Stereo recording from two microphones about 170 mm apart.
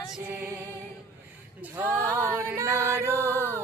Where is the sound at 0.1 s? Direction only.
5° right (ahead or behind).